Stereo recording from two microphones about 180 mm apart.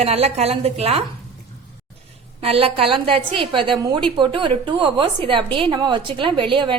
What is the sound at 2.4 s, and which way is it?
A woman's voice, 35° right (ahead or behind).